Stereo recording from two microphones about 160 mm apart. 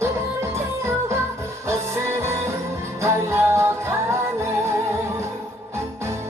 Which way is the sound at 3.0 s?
15° right (ahead or behind).